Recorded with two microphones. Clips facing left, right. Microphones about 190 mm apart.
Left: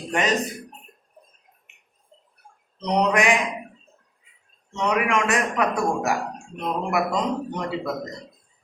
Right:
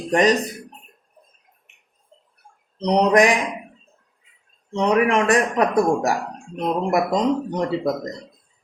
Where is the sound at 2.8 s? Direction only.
35° right (ahead or behind).